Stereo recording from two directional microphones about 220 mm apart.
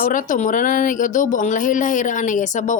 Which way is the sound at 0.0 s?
35° left (ahead or behind).